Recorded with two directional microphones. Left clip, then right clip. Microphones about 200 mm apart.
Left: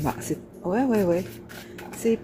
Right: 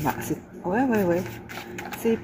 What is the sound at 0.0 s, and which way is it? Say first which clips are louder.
Speech: right 1 dB; 15° left (ahead or behind).